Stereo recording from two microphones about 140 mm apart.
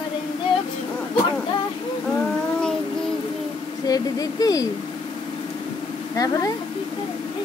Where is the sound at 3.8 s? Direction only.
25° left (ahead or behind).